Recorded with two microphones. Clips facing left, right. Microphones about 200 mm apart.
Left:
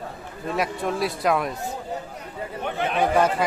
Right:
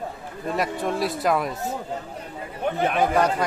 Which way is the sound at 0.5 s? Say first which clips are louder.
Even; centre (ahead or behind).